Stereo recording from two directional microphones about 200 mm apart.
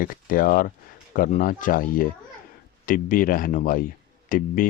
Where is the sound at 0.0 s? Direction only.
45° left (ahead or behind).